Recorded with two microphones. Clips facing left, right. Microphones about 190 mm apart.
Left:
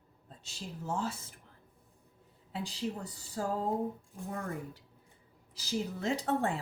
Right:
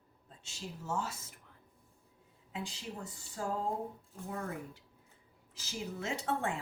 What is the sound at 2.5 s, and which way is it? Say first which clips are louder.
Speech: left 6 dB; 35° left (ahead or behind).